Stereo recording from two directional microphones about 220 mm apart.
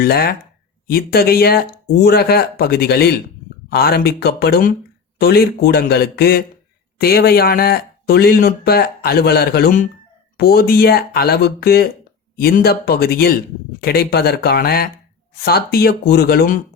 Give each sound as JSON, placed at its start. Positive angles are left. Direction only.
{"t": 0.0, "sound": "speech", "side_deg": 45}